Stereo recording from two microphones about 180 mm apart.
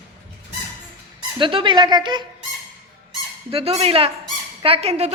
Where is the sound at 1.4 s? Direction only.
30° right (ahead or behind).